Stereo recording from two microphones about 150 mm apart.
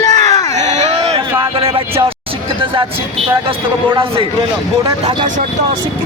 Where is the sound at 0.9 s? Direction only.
40° right (ahead or behind).